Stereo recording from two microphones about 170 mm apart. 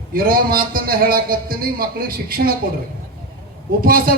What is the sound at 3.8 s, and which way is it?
Speech, 60° right (ahead or behind).